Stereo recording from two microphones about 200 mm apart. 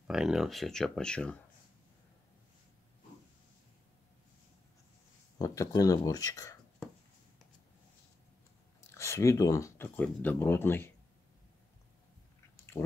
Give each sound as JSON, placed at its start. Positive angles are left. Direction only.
{"t": 0.0, "sound": "speech", "side_deg": 0}
{"t": 5.4, "sound": "speech", "side_deg": 15}
{"t": 8.9, "sound": "speech", "side_deg": 15}